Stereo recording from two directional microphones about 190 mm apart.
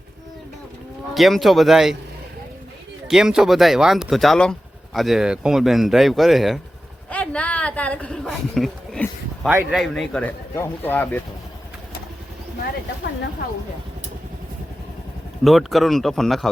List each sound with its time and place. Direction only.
1.1 s a man's voice: centre (ahead or behind)
3.1 s a man's voice: 5° right (ahead or behind)
15.4 s a man's voice: centre (ahead or behind)